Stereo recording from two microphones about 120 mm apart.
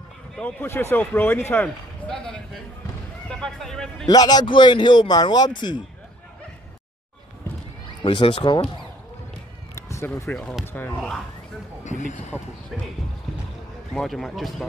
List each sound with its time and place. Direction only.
0.4 s a man's voice: 15° left (ahead or behind)
4.1 s a man's voice: 35° left (ahead or behind)
8.0 s speech: 45° left (ahead or behind)
9.8 s a sound: 25° left (ahead or behind)
10.2 s a man's voice: 5° left (ahead or behind)
10.6 s speech: 15° left (ahead or behind)
11.8 s speech: 90° left
12.7 s a man's voice: centre (ahead or behind)
13.9 s a man's voice: centre (ahead or behind)